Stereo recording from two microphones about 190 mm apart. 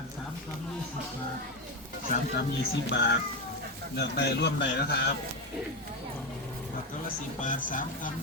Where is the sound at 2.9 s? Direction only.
65° left (ahead or behind).